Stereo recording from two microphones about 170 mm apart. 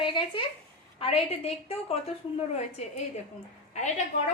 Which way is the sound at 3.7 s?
45° left (ahead or behind).